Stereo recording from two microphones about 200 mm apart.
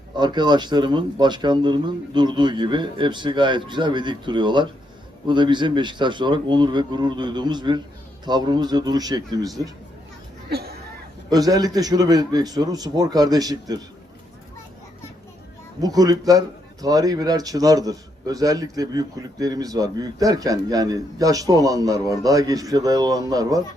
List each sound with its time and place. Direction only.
0.2 s speech: 20° right (ahead or behind)
10.5 s speech: 50° right (ahead or behind)
11.3 s speech: 20° right (ahead or behind)
15.8 s a man's voice: 20° right (ahead or behind)